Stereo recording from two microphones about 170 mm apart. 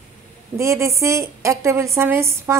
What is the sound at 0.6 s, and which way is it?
A woman's voice, 15° right (ahead or behind).